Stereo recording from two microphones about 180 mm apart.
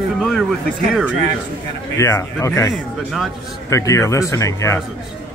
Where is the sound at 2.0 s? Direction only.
15° left (ahead or behind).